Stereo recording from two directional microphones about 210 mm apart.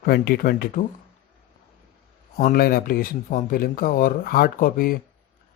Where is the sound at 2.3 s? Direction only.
40° left (ahead or behind).